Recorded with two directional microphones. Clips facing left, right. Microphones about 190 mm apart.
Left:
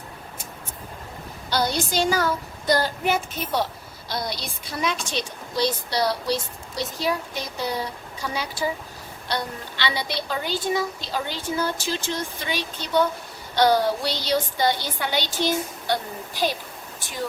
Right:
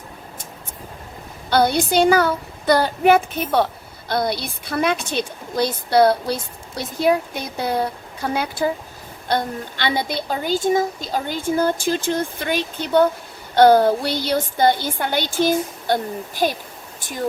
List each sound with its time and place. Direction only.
1.5 s a woman's voice: 55° right (ahead or behind)